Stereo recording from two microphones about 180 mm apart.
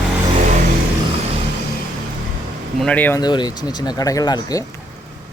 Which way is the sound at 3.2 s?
25° left (ahead or behind).